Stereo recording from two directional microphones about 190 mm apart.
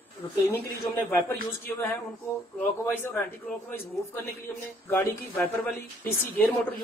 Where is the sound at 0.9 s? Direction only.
10° left (ahead or behind).